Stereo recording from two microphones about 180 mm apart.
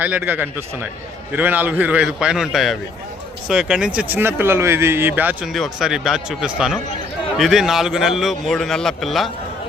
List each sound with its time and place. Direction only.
0.0 s a man's voice: 10° right (ahead or behind)